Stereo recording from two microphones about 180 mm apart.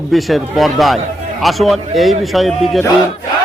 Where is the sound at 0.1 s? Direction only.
Centre (ahead or behind).